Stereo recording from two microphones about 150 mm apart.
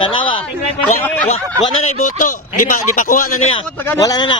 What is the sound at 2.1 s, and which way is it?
Speech, 65° left (ahead or behind).